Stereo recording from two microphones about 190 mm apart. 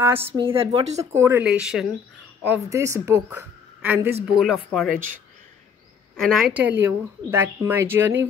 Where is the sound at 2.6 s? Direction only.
15° right (ahead or behind); by 5.0 s centre (ahead or behind).